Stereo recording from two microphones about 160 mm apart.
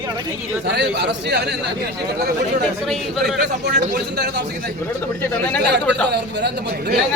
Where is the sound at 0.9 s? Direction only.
90° right.